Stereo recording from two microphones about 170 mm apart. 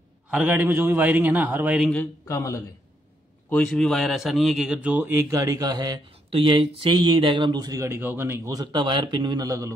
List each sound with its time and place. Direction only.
0.3 s a man's voice: 5° right (ahead or behind)
2.2 s a man's voice: 20° left (ahead or behind)
3.4 s a man's voice: 5° left (ahead or behind); by 9.7 s 20° right (ahead or behind)